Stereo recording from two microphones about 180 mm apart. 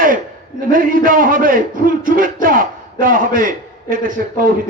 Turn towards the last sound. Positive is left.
turn(degrees=-50)  # may be behind; listen again after turning